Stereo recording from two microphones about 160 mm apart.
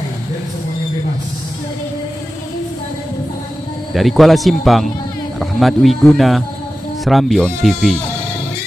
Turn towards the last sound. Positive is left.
turn(degrees=5)  # may be behind; listen again after turning